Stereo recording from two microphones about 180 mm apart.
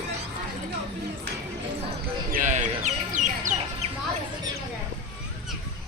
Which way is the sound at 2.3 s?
45° right (ahead or behind).